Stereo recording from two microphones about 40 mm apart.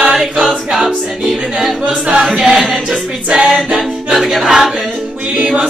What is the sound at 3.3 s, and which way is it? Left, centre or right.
A capella, right.